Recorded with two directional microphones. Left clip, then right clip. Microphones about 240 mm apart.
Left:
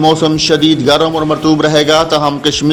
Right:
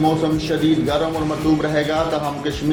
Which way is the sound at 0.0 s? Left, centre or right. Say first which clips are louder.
Left 8 dB; left.